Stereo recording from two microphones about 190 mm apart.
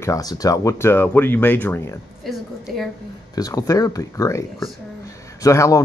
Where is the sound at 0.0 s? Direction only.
20° left (ahead or behind).